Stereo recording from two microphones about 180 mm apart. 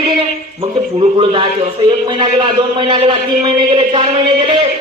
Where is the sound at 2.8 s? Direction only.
30° right (ahead or behind).